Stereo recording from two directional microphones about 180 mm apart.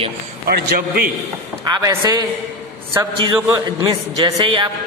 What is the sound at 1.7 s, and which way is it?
Speech, 20° right (ahead or behind).